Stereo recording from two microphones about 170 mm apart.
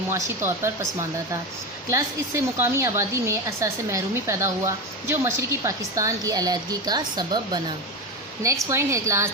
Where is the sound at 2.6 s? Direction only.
15° right (ahead or behind).